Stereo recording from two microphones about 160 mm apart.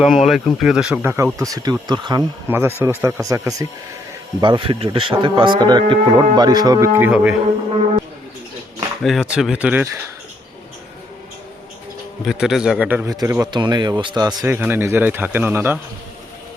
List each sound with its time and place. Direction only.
0.0 s speech: centre (ahead or behind)
1.0 s speech: 20° right (ahead or behind)
2.5 s speech: 15° right (ahead or behind)
4.4 s speech: 30° right (ahead or behind)
7.1 s speech: 5° right (ahead or behind)
9.0 s speech: 5° right (ahead or behind)
12.2 s speech: centre (ahead or behind)
13.1 s speech: 20° right (ahead or behind)
14.4 s speech: 15° right (ahead or behind)